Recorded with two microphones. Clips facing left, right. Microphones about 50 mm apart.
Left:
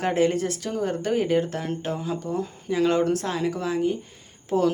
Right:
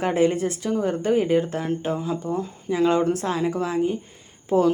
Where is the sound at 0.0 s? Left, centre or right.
Right.